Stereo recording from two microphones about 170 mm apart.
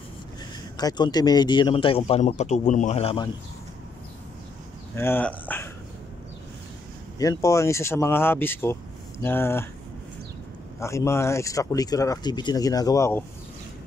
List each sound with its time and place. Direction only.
0.7 s a man's voice: 25° left (ahead or behind)
4.9 s speech: 15° left (ahead or behind)
7.2 s speech: 20° left (ahead or behind)
10.8 s speech: 15° left (ahead or behind)